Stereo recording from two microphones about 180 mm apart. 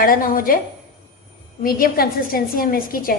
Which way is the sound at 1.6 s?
50° left (ahead or behind).